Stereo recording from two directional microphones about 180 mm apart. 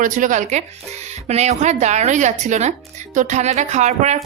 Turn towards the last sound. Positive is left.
turn(degrees=-40)  # may be behind; listen again after turning